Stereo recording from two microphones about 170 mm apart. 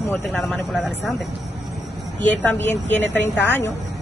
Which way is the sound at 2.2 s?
10° left (ahead or behind).